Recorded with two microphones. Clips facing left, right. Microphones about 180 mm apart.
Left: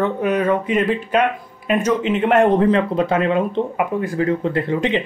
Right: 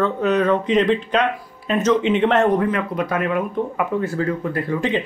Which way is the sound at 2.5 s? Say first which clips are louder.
Left 4 dB; 30° left (ahead or behind).